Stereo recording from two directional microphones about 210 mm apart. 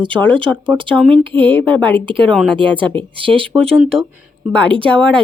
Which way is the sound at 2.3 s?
5° left (ahead or behind).